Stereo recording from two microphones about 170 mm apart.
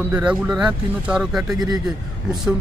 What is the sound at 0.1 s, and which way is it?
Speech, 5° right (ahead or behind).